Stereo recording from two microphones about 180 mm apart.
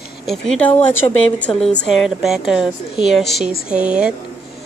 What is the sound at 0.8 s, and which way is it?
Speech, 10° left (ahead or behind).